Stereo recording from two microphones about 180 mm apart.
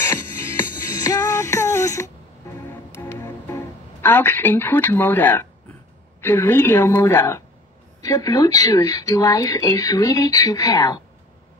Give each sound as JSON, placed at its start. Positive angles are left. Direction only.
{"t": 0.6, "sound": "music", "side_deg": 20}
{"t": 6.2, "sound": "a woman's voice", "side_deg": 15}